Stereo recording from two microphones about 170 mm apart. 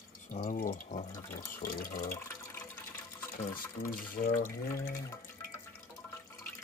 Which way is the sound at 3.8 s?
55° left (ahead or behind).